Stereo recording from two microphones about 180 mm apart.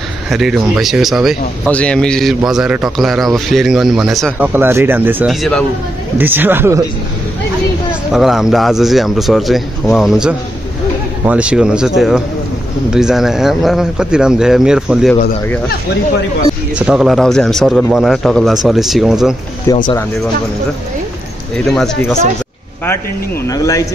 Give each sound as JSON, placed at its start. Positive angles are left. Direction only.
{"t": 0.3, "sound": "a man's voice", "side_deg": 0}
{"t": 4.5, "sound": "speech", "side_deg": -10}
{"t": 6.1, "sound": "speech", "side_deg": -10}
{"t": 8.1, "sound": "a man's voice", "side_deg": 0}
{"t": 16.7, "sound": "a man's voice", "side_deg": -5}
{"t": 19.7, "sound": "speech", "side_deg": 15}
{"t": 21.6, "sound": "a man's voice", "side_deg": 5}
{"t": 23.4, "sound": "speech", "side_deg": 15}